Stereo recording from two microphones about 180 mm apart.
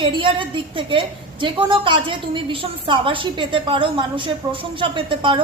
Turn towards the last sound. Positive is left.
turn(degrees=-30)  # may be behind; listen again after turning